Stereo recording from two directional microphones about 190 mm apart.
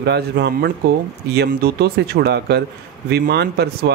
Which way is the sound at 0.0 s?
60° right (ahead or behind).